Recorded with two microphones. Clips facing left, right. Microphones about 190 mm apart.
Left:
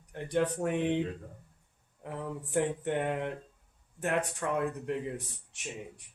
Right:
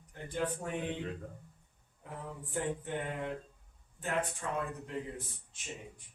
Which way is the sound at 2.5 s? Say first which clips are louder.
Left 6 dB; 70° left (ahead or behind).